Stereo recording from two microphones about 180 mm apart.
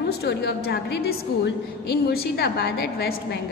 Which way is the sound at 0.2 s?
65° left (ahead or behind).